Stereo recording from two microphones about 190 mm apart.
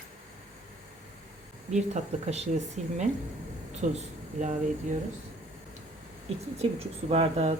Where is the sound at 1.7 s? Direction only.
35° right (ahead or behind).